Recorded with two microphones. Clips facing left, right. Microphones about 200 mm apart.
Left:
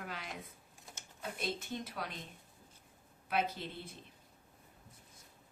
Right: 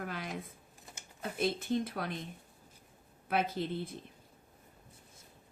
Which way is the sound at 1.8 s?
50° right (ahead or behind).